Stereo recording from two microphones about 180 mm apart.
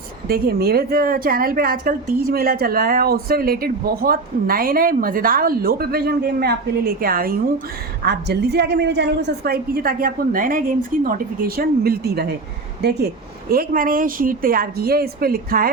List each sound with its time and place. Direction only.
0.3 s a woman's voice: 55° right (ahead or behind)
8.0 s a woman's voice: 65° right (ahead or behind)
13.5 s a woman's voice: 50° right (ahead or behind)